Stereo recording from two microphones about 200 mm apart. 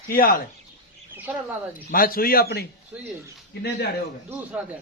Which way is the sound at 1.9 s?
45° left (ahead or behind).